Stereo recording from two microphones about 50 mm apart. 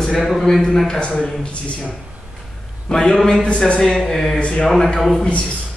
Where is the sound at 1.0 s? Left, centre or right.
Left.